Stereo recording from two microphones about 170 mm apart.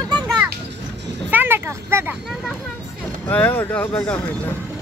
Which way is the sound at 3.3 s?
10° left (ahead or behind).